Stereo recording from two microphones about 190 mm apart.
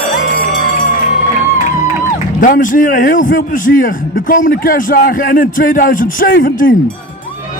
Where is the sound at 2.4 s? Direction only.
45° left (ahead or behind).